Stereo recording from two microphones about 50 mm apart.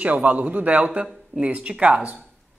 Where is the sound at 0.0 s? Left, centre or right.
Right.